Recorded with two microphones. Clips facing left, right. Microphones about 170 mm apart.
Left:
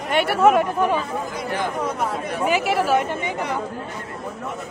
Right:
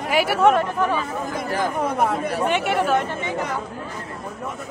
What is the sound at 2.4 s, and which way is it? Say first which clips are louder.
Speech: left 2 dB; centre (ahead or behind).